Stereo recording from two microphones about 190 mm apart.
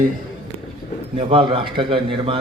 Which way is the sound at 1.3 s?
25° right (ahead or behind).